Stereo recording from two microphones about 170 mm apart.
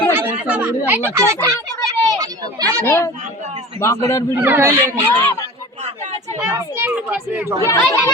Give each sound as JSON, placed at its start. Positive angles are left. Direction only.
{"t": 0.1, "sound": "a child's voice", "side_deg": -10}
{"t": 2.8, "sound": "speech", "side_deg": 15}
{"t": 4.4, "sound": "speech", "side_deg": -15}
{"t": 5.1, "sound": "speech", "side_deg": 15}
{"t": 5.8, "sound": "a sound", "side_deg": -40}
{"t": 6.5, "sound": "speech", "side_deg": -10}
{"t": 7.6, "sound": "speech", "side_deg": 15}